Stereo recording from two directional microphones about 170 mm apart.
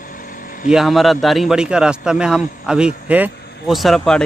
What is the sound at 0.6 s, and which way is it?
A man's voice, centre (ahead or behind).